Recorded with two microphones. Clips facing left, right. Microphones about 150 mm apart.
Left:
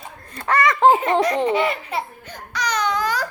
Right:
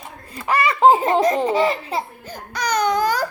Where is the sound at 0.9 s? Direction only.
30° right (ahead or behind).